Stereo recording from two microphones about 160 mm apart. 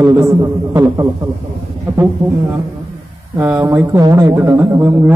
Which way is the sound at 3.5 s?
15° right (ahead or behind).